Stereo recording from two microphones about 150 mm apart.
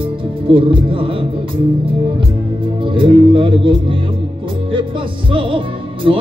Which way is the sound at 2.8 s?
35° right (ahead or behind).